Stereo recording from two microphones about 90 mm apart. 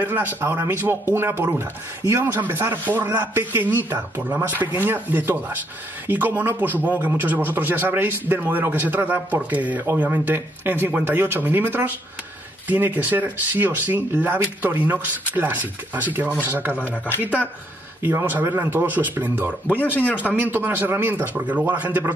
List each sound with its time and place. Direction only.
0.0 s speech: 20° right (ahead or behind)
16.8 s speech: 20° left (ahead or behind)
18.0 s speech: 20° right (ahead or behind)
19.7 s speech: 20° left (ahead or behind)
20.2 s speech: 20° right (ahead or behind)